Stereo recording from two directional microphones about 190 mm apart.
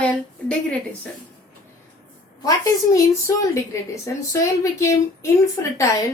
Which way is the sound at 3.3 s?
15° left (ahead or behind).